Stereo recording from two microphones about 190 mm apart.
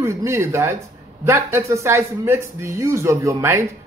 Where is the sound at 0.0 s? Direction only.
15° right (ahead or behind).